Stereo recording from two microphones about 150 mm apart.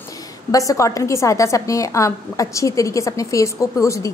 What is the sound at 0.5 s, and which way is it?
A woman's voice, 20° left (ahead or behind).